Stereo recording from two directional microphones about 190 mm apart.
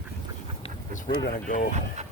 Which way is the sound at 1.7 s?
35° right (ahead or behind).